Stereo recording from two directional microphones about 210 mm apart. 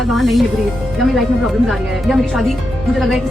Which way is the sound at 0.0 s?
Centre (ahead or behind).